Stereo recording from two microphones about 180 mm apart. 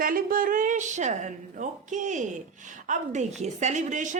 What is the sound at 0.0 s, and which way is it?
A woman's voice, 50° right (ahead or behind).